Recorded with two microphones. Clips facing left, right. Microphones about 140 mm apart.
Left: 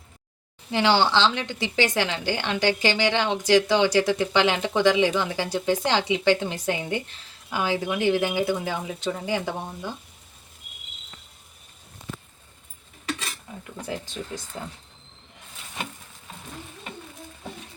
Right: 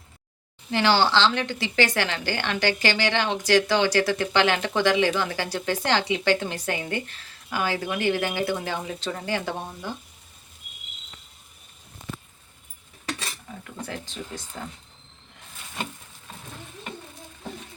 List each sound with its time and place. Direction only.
0.7 s a woman's voice: 20° left (ahead or behind)
13.8 s a woman's voice: 15° left (ahead or behind)